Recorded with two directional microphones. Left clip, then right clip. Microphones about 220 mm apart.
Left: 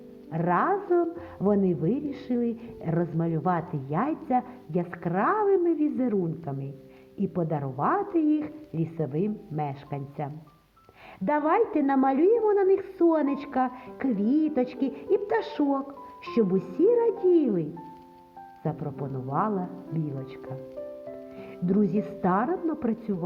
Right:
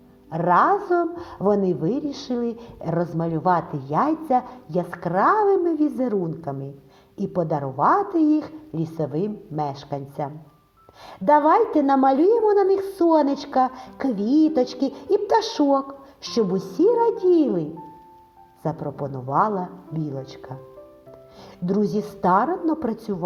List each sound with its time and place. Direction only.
0.3 s a woman's voice: 30° right (ahead or behind)
18.6 s speech: 30° right (ahead or behind)
21.9 s speech: 30° right (ahead or behind)